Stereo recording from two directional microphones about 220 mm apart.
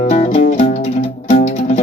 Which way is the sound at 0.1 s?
30° left (ahead or behind).